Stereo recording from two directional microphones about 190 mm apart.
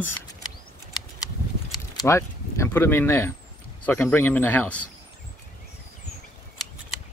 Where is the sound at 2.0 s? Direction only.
15° left (ahead or behind).